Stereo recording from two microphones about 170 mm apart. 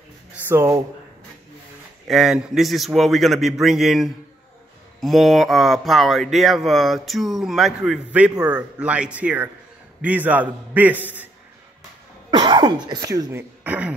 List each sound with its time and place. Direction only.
0.3 s a sound: 15° right (ahead or behind)
2.0 s a man's voice: 5° right (ahead or behind)
12.3 s speech: 25° right (ahead or behind); by 13.9 s 10° right (ahead or behind)